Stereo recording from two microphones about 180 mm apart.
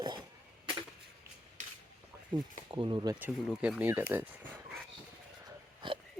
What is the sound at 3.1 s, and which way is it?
Speech, 5° right (ahead or behind).